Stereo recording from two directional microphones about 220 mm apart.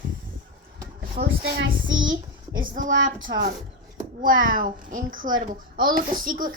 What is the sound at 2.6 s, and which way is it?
Speech, 35° right (ahead or behind).